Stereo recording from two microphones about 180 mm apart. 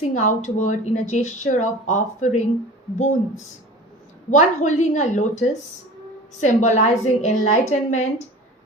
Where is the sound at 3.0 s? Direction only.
40° left (ahead or behind).